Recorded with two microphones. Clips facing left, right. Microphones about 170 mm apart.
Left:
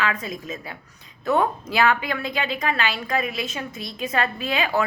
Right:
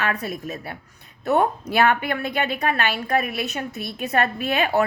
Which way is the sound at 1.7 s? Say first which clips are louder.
Right 1 dB; 55° right (ahead or behind).